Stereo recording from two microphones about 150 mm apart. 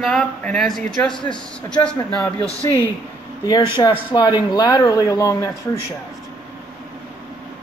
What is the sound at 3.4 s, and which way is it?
Speech, 25° left (ahead or behind).